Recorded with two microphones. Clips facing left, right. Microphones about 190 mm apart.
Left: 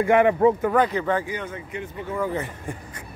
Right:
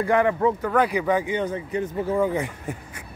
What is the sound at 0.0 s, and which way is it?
Speech, 20° left (ahead or behind).